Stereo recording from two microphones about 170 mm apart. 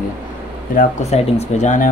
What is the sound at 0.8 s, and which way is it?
Speech, 40° left (ahead or behind).